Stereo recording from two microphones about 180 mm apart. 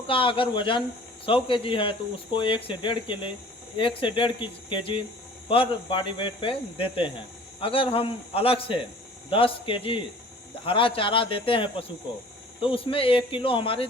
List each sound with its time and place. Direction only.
0.1 s a man's voice: 30° left (ahead or behind)